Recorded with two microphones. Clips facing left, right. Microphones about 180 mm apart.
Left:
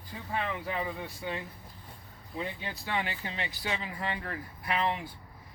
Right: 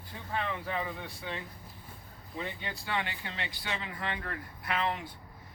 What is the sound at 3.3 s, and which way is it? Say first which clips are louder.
Speech: left 3 dB; 40° left (ahead or behind).